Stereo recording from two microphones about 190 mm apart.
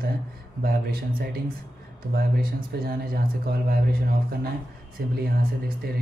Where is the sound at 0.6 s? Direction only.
50° right (ahead or behind).